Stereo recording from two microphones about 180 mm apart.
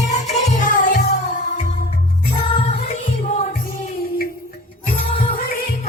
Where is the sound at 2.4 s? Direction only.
25° left (ahead or behind).